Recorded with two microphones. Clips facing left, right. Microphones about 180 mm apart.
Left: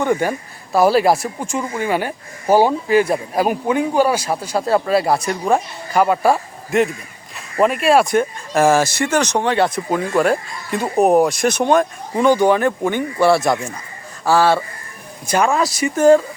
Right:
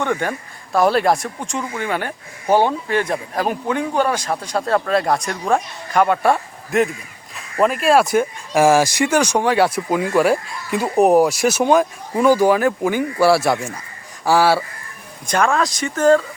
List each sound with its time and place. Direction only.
0.0 s speech: 10° left (ahead or behind); by 14.6 s 10° right (ahead or behind)
15.3 s speech: 5° left (ahead or behind)